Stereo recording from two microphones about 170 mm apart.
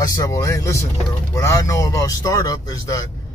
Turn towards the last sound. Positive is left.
turn(degrees=20)  # may be behind; listen again after turning